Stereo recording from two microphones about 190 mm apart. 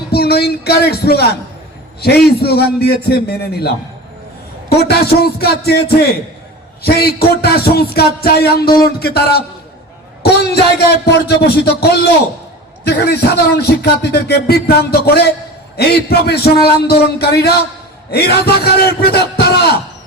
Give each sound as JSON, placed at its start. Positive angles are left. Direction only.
{"t": 0.1, "sound": "a man's voice", "side_deg": 55}